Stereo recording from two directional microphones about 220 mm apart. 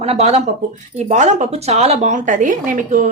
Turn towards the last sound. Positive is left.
turn(degrees=-35)  # may be behind; listen again after turning